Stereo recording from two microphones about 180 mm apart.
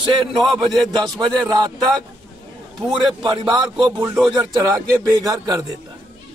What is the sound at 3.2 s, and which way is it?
Speech, 30° right (ahead or behind).